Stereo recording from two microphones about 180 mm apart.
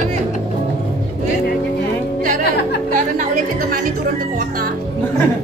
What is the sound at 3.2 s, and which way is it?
Music, 50° right (ahead or behind).